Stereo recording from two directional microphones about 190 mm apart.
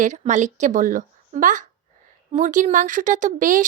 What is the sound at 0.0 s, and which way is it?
A woman's voice, 40° right (ahead or behind).